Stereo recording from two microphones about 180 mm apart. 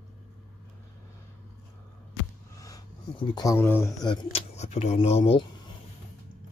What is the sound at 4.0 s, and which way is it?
Speech, 25° left (ahead or behind).